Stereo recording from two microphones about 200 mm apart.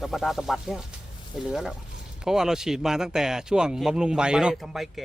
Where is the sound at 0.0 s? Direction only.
Centre (ahead or behind).